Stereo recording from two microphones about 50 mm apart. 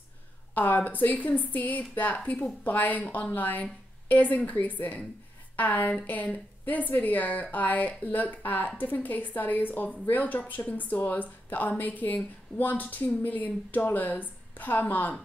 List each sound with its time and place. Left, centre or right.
0.6 s speech: left